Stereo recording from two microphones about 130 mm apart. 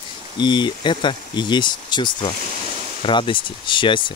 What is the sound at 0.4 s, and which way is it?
Speech, 35° left (ahead or behind).